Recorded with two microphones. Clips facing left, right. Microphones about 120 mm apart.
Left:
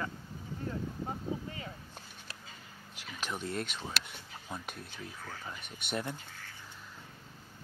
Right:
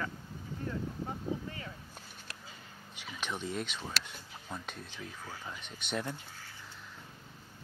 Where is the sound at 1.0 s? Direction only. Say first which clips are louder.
Even; 20° left (ahead or behind).